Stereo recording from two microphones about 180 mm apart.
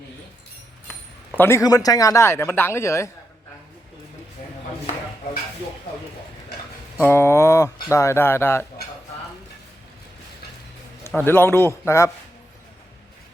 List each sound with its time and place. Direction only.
1.4 s speech: 15° left (ahead or behind)
7.0 s speech: 15° left (ahead or behind)
11.1 s speech: 10° left (ahead or behind)